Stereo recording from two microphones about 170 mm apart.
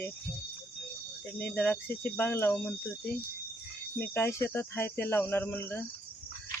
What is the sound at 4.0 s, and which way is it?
Speech, 15° left (ahead or behind).